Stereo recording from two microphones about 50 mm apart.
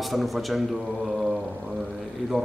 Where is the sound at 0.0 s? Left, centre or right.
Centre.